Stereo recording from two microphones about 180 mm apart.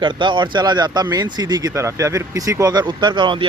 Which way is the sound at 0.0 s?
25° right (ahead or behind).